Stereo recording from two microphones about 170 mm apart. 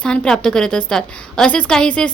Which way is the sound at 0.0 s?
5° left (ahead or behind).